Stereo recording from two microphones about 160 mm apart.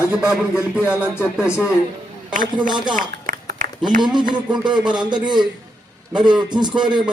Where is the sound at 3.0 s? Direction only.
65° right (ahead or behind).